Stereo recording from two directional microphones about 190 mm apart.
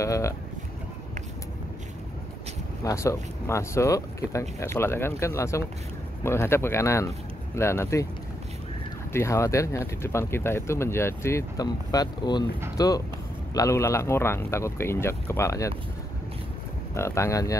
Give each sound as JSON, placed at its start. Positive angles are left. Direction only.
{"t": 0.0, "sound": "speech", "side_deg": 15}
{"t": 2.8, "sound": "speech", "side_deg": 15}
{"t": 9.1, "sound": "speech", "side_deg": 15}
{"t": 16.9, "sound": "speech", "side_deg": 15}